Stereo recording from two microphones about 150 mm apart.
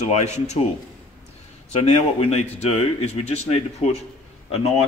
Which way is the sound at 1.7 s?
45° left (ahead or behind).